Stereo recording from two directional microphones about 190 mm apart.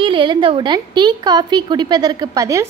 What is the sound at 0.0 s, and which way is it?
A woman's voice, 25° right (ahead or behind).